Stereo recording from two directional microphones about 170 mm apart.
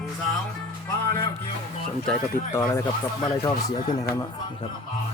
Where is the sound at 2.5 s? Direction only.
15° left (ahead or behind).